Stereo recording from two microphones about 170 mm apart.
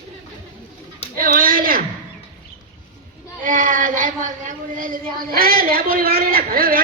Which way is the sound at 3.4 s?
50° right (ahead or behind).